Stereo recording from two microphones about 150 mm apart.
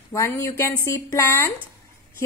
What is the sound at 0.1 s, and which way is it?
Speech, 20° left (ahead or behind).